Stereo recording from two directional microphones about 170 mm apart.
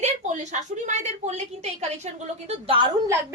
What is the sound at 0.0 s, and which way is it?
A woman's voice, 45° right (ahead or behind).